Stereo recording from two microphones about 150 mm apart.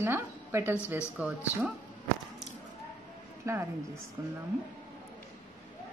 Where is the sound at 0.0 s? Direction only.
15° right (ahead or behind).